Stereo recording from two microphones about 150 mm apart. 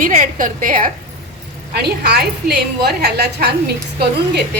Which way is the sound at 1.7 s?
90° right.